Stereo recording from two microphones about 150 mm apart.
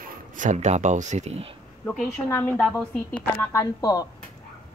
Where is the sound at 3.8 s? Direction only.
25° left (ahead or behind).